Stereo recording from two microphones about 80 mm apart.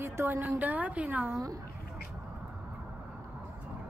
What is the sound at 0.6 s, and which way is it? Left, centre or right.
Speech, centre.